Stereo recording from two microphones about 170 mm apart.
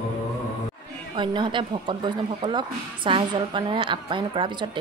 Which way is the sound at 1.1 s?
30° right (ahead or behind).